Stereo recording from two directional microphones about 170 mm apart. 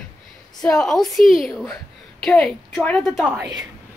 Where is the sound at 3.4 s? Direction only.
25° right (ahead or behind).